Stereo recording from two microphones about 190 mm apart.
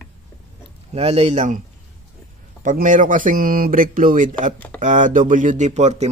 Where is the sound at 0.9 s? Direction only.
35° right (ahead or behind).